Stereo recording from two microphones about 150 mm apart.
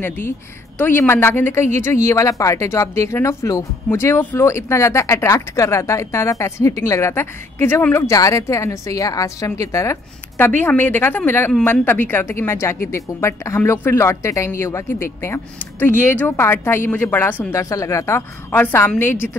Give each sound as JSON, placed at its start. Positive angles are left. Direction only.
{"t": 0.7, "sound": "a woman's voice", "side_deg": 15}